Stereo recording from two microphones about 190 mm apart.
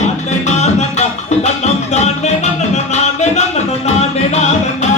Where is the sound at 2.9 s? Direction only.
35° left (ahead or behind).